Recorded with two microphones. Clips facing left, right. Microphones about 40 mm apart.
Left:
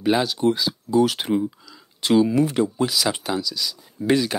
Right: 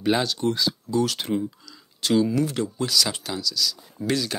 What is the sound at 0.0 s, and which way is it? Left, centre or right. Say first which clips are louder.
Speech: left 3 dB; centre.